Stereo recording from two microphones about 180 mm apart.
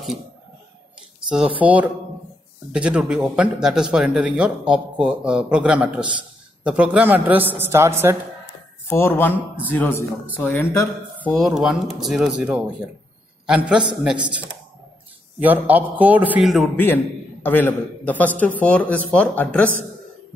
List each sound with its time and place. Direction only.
1.6 s a man's voice: 10° right (ahead or behind)
8.8 s a man's voice: 15° left (ahead or behind)
11.2 s speech: centre (ahead or behind)
14.1 s speech: 25° right (ahead or behind)
15.3 s a man's voice: 10° right (ahead or behind)
16.7 s a man's voice: 10° left (ahead or behind)